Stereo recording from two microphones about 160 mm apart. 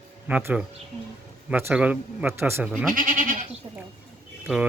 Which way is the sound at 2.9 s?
55° right (ahead or behind).